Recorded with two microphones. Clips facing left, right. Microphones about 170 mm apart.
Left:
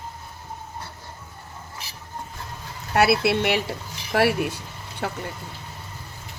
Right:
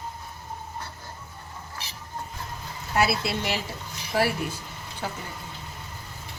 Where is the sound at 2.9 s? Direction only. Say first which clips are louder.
Left 6 dB; 65° left (ahead or behind).